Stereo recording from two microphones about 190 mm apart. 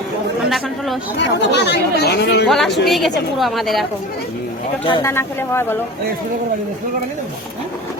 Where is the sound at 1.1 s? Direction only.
65° left (ahead or behind).